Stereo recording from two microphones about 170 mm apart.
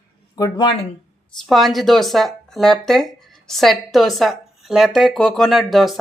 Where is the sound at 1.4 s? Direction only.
Centre (ahead or behind).